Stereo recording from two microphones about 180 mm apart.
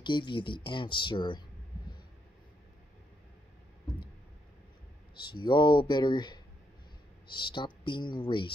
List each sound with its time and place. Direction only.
0.0 s speech: 25° left (ahead or behind)
5.1 s speech: 25° left (ahead or behind)